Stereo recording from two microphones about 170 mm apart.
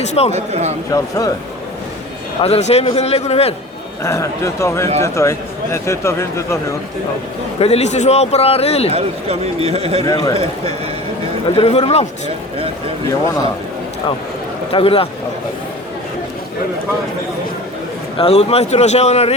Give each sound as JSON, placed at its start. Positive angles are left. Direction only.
{"t": 0.0, "sound": "a man's voice", "side_deg": 40}
{"t": 0.3, "sound": "speech", "side_deg": -40}
{"t": 0.9, "sound": "speech", "side_deg": 20}
{"t": 2.4, "sound": "a man's voice", "side_deg": 40}
{"t": 4.0, "sound": "a man's voice", "side_deg": 15}
{"t": 7.6, "sound": "a man's voice", "side_deg": 40}
{"t": 8.9, "sound": "speech", "side_deg": -35}
{"t": 10.1, "sound": "speech", "side_deg": 20}
{"t": 11.4, "sound": "a man's voice", "side_deg": 35}
{"t": 14.7, "sound": "a man's voice", "side_deg": 35}
{"t": 18.2, "sound": "a man's voice", "side_deg": 35}